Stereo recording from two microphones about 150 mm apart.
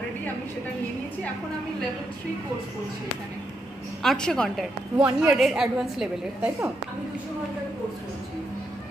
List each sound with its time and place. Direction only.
4.0 s a woman's voice: centre (ahead or behind)
4.9 s a woman's voice: 15° right (ahead or behind)
5.4 s a woman's voice: 5° right (ahead or behind)